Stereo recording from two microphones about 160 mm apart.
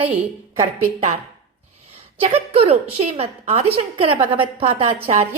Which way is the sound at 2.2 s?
40° right (ahead or behind).